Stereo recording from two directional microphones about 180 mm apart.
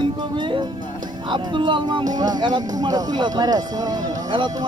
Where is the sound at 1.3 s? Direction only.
25° right (ahead or behind).